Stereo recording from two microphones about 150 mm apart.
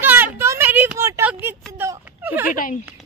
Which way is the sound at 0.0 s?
15° right (ahead or behind).